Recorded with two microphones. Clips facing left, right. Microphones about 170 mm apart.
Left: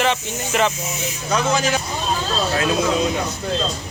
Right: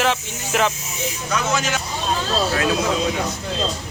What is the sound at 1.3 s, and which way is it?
Speech, 35° left (ahead or behind).